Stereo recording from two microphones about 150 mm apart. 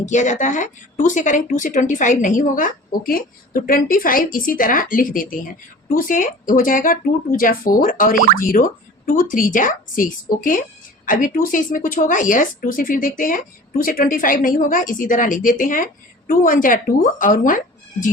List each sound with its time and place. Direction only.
0.0 s speech: 55° left (ahead or behind)